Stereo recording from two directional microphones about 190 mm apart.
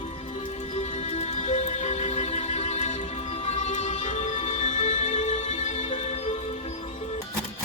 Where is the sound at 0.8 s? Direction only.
35° left (ahead or behind).